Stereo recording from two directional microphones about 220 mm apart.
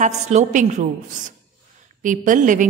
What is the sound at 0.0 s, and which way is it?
A woman's voice, 30° right (ahead or behind).